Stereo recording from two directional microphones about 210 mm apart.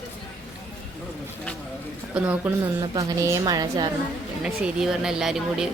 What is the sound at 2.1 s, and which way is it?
A woman's voice, 10° right (ahead or behind).